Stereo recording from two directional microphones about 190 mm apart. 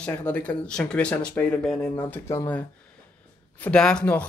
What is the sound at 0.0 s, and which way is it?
Speech, 5° left (ahead or behind).